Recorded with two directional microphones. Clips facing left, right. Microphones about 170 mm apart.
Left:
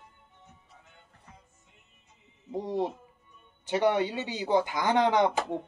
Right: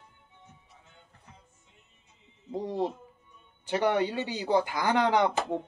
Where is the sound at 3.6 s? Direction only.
20° left (ahead or behind).